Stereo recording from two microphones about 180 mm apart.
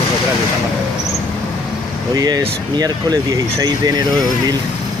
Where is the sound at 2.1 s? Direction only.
20° right (ahead or behind).